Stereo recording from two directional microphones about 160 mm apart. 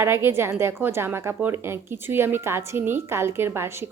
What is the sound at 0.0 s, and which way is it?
A woman's voice, 15° right (ahead or behind).